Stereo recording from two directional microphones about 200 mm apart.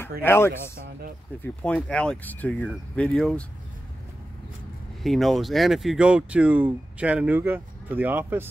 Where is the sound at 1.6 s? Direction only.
5° left (ahead or behind).